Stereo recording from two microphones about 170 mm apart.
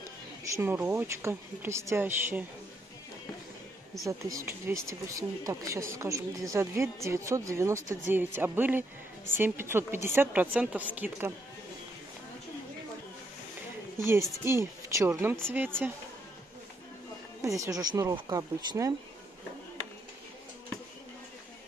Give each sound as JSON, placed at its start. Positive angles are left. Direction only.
{"t": 0.4, "sound": "speech", "side_deg": -15}
{"t": 4.1, "sound": "speech", "side_deg": -20}
{"t": 13.9, "sound": "a woman's voice", "side_deg": -15}
{"t": 17.4, "sound": "speech", "side_deg": -20}